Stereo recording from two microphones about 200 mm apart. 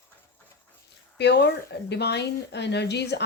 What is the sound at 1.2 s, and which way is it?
Speech, 55° left (ahead or behind).